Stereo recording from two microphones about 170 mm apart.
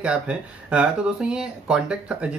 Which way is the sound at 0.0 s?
5° right (ahead or behind).